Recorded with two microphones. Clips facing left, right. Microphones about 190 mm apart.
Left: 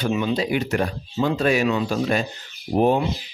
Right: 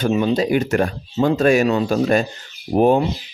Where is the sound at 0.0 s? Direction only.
45° right (ahead or behind).